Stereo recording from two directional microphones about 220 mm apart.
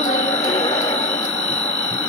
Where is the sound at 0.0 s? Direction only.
30° left (ahead or behind).